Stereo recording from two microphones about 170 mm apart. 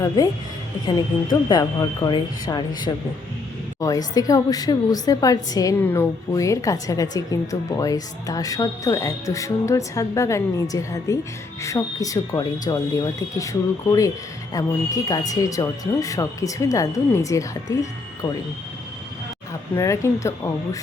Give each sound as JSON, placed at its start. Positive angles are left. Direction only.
{"t": 0.9, "sound": "a woman's voice", "side_deg": 25}
{"t": 19.7, "sound": "speech", "side_deg": 15}